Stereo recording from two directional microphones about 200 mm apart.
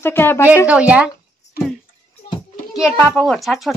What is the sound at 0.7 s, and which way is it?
Speech, 5° right (ahead or behind).